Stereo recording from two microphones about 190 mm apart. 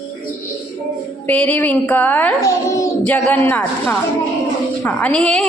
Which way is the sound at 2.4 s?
15° left (ahead or behind).